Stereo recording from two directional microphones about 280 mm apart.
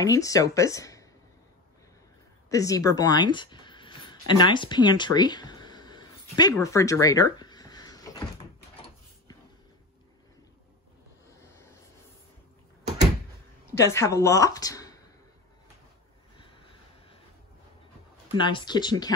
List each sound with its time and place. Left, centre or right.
0.0 s speech: centre
2.5 s speech: centre
13.7 s speech: centre
16.3 s vehicle: centre
18.3 s speech: centre